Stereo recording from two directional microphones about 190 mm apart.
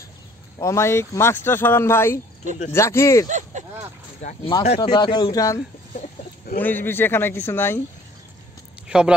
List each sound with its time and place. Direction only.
0.6 s speech: 15° left (ahead or behind)
3.3 s a sound: 40° right (ahead or behind)
4.4 s speech: 20° left (ahead or behind)
5.9 s chicken: 50° left (ahead or behind)
6.6 s speech: 10° left (ahead or behind)
8.8 s a sound: 5° right (ahead or behind)